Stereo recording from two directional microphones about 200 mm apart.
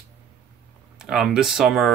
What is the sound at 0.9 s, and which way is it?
Speech, 5° right (ahead or behind).